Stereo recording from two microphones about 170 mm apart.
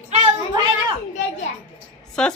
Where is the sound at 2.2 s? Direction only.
5° left (ahead or behind).